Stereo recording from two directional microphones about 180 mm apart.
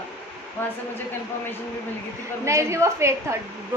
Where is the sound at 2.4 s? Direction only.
15° right (ahead or behind).